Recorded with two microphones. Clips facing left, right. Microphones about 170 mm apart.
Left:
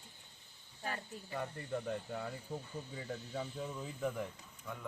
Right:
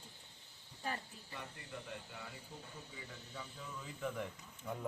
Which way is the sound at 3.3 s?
45° left (ahead or behind).